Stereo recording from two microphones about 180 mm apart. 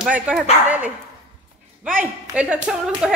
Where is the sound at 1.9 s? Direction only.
10° right (ahead or behind).